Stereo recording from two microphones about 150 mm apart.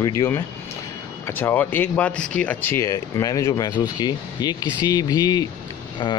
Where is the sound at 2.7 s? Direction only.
20° left (ahead or behind).